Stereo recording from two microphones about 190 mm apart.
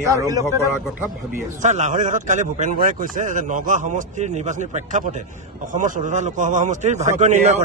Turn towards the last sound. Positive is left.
turn(degrees=-35)  # may be behind; listen again after turning